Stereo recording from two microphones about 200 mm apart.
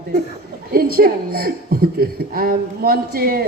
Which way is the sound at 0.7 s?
50° right (ahead or behind).